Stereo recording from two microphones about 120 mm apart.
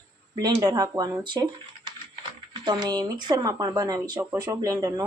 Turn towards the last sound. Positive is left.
turn(degrees=-30)  # may be behind; listen again after turning